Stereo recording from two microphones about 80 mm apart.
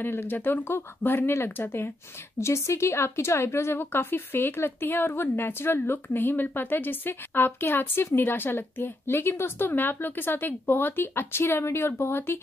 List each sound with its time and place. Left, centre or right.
0.0 s a woman's voice: left